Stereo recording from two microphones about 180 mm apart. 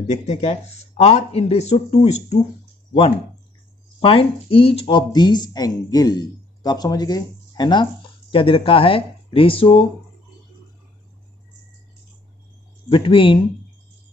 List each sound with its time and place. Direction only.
0.1 s speech: 35° left (ahead or behind)
4.0 s speech: 30° left (ahead or behind)
12.9 s speech: 30° left (ahead or behind)